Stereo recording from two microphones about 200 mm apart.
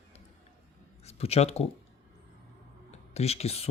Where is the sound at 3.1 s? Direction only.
30° left (ahead or behind).